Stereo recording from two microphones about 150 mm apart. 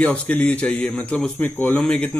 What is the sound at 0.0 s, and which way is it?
Speech, 10° left (ahead or behind).